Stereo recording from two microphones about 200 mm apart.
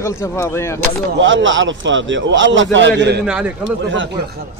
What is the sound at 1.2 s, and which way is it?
A man's voice, 70° right (ahead or behind).